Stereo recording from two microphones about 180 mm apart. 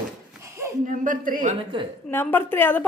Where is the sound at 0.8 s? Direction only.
45° right (ahead or behind).